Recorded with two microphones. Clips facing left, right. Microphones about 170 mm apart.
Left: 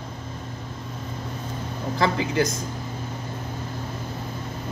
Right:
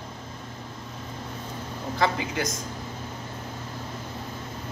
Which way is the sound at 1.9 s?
30° left (ahead or behind).